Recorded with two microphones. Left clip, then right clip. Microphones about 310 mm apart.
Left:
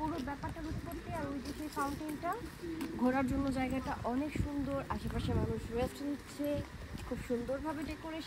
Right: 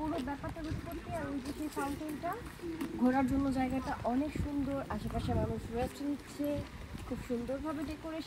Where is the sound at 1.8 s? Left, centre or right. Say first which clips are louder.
Left 1 dB; centre.